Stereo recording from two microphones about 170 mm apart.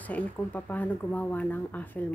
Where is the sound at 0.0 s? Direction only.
10° left (ahead or behind).